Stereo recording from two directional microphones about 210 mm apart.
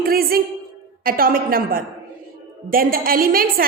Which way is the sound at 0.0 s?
45° right (ahead or behind).